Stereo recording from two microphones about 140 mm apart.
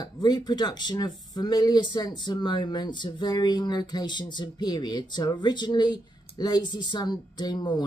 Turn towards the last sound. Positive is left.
turn(degrees=30)  # may be behind; listen again after turning